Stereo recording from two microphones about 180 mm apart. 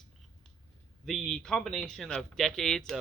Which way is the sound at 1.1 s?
5° left (ahead or behind).